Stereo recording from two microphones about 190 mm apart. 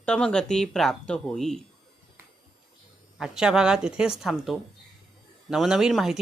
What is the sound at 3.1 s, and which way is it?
Speech, centre (ahead or behind).